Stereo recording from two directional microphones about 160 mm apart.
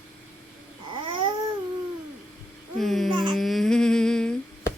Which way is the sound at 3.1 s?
30° right (ahead or behind).